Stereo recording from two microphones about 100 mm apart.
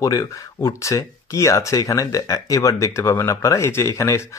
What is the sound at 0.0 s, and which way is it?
Speech, 35° left (ahead or behind).